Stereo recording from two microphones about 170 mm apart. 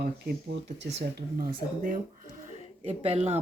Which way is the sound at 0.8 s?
90° right.